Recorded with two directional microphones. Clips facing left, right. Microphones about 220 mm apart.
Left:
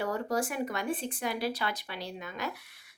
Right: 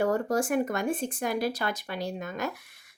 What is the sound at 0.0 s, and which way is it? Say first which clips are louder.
Speech: right 5 dB; 45° right (ahead or behind).